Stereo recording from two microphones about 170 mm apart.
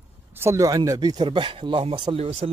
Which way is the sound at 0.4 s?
20° right (ahead or behind).